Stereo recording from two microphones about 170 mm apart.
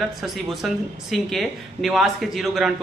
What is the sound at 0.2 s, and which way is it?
Speech, centre (ahead or behind).